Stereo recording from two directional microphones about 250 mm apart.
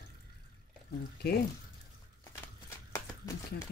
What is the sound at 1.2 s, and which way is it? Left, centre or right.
Speech, left.